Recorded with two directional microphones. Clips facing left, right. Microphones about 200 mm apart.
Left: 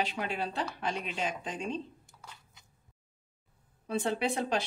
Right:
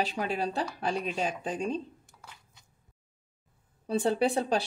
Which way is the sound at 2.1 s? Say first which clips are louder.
Even; centre (ahead or behind).